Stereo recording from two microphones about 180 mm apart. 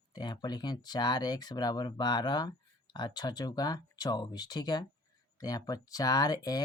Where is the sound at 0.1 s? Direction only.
25° left (ahead or behind).